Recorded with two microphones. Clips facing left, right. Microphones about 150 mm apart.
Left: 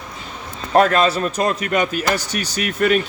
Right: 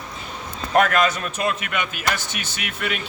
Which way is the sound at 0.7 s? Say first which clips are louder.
Left 4 dB; 30° left (ahead or behind).